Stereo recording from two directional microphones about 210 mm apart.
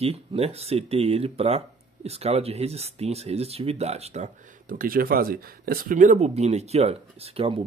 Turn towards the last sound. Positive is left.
turn(degrees=-30)  # may be behind; listen again after turning